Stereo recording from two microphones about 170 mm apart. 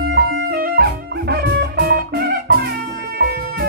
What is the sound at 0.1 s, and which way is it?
Music, 70° right (ahead or behind).